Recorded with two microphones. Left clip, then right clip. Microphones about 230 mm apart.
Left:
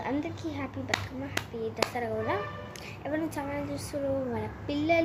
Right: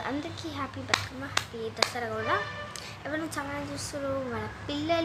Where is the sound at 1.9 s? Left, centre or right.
Centre.